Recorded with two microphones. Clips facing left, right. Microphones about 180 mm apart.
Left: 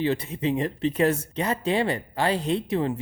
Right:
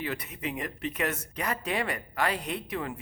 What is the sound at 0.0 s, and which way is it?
Speech, 25° left (ahead or behind).